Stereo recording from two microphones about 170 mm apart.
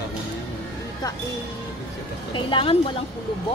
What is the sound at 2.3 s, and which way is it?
Speech, 30° left (ahead or behind).